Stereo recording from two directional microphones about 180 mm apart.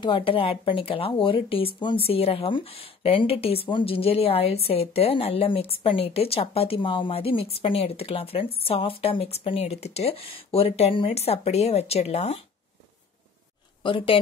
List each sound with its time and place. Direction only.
0.0 s speech: 30° left (ahead or behind)
13.8 s speech: 30° left (ahead or behind)